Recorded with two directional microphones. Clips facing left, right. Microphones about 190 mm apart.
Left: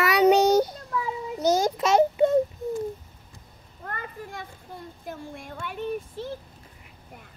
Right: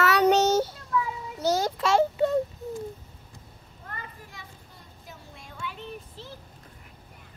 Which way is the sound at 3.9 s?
55° left (ahead or behind).